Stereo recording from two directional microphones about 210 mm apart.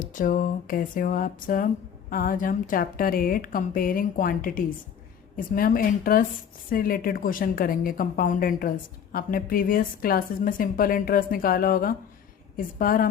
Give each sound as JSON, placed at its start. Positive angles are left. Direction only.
{"t": 0.0, "sound": "a woman's voice", "side_deg": 40}